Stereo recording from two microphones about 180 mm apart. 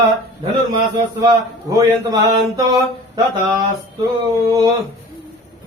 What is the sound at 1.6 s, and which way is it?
Mantra, 20° right (ahead or behind).